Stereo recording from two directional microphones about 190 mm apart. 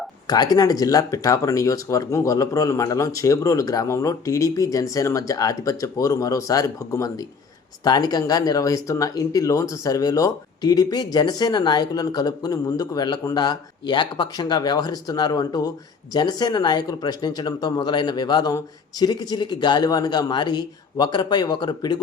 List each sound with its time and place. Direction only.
0.3 s speech: 20° left (ahead or behind)